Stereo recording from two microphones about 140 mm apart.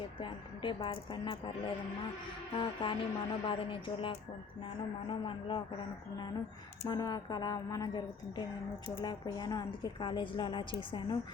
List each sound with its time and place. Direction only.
0.2 s speech: 35° left (ahead or behind)
6.8 s a woman's voice: 30° left (ahead or behind)